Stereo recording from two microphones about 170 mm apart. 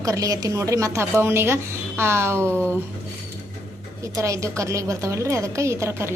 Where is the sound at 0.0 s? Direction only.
20° right (ahead or behind).